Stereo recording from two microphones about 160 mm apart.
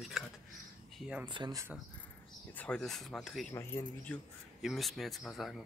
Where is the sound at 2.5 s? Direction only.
5° left (ahead or behind).